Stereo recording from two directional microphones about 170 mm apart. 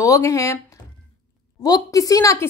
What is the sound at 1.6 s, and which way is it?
Speech, 20° left (ahead or behind).